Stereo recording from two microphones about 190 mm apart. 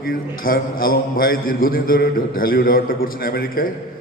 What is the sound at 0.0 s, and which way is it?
A man's voice, 50° left (ahead or behind).